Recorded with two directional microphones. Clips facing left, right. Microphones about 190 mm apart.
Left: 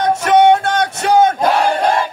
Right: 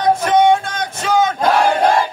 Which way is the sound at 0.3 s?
70° left (ahead or behind).